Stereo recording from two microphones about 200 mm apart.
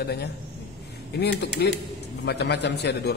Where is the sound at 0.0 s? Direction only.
55° left (ahead or behind).